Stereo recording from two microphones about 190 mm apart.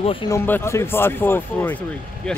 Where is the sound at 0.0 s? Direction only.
30° left (ahead or behind).